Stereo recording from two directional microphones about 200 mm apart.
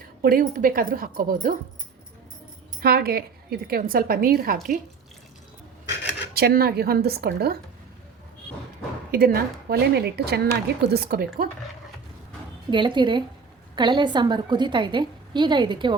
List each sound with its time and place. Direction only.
0.2 s a woman's voice: 45° right (ahead or behind)
2.8 s a woman's voice: 50° right (ahead or behind)
6.3 s a woman's voice: 50° right (ahead or behind)
9.1 s a woman's voice: 50° right (ahead or behind)
12.7 s a woman's voice: 25° right (ahead or behind)